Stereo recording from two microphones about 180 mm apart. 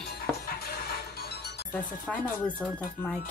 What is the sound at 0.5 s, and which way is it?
Music, 60° left (ahead or behind).